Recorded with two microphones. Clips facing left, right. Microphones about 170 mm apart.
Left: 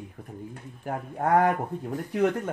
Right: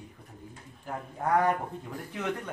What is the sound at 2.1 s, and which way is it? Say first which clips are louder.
Speech: left 9 dB; 40° left (ahead or behind).